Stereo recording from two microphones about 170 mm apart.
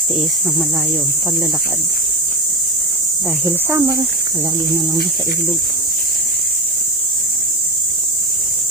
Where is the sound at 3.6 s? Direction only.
20° right (ahead or behind).